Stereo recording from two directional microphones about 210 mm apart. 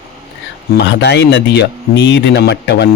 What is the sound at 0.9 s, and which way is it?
A man's voice, 55° left (ahead or behind).